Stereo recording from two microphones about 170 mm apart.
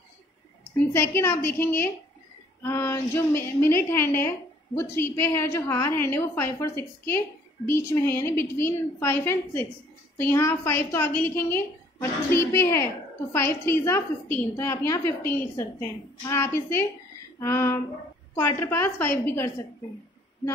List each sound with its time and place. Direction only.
0.7 s a woman's voice: 15° left (ahead or behind)